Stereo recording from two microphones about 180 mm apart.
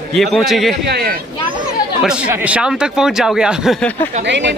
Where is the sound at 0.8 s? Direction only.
65° right (ahead or behind).